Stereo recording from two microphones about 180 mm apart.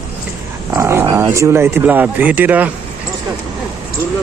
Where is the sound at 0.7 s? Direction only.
15° right (ahead or behind).